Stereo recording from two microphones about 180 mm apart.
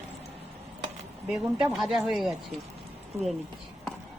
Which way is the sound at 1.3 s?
Centre (ahead or behind).